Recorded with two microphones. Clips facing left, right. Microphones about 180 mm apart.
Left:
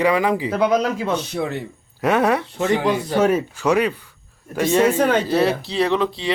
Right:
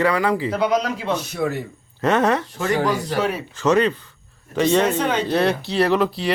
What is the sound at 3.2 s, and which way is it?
Speech, 45° left (ahead or behind).